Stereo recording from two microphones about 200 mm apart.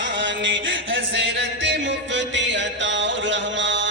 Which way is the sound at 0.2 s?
65° right (ahead or behind).